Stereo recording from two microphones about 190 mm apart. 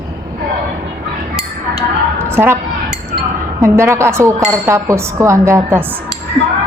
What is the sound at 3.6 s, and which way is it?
A woman's voice, 15° right (ahead or behind).